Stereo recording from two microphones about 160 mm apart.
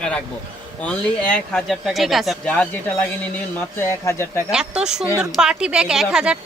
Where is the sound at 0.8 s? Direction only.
5° left (ahead or behind).